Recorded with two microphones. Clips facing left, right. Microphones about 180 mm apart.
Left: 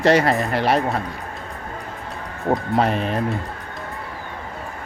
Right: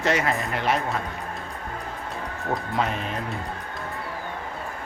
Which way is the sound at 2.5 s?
50° left (ahead or behind).